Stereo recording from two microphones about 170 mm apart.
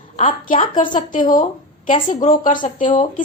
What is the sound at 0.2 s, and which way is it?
A woman's voice, 50° left (ahead or behind).